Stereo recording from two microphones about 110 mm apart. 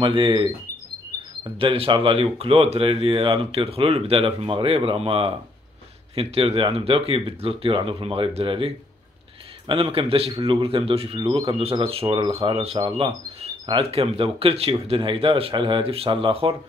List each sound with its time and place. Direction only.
0.0 s speech: 50° right (ahead or behind)
1.6 s speech: 55° right (ahead or behind)